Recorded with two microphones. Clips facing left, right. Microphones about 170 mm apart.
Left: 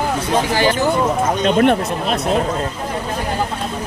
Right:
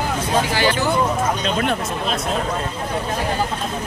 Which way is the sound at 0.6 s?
45° left (ahead or behind).